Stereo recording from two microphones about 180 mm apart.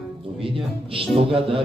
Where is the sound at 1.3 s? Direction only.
30° right (ahead or behind).